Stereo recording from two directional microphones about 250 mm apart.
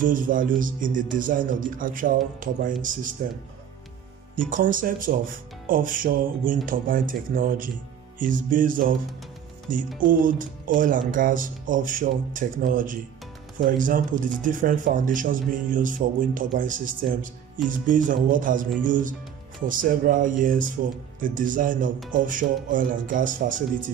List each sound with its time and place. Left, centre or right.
0.0 s speech: right
4.5 s speech: right
9.9 s speech: right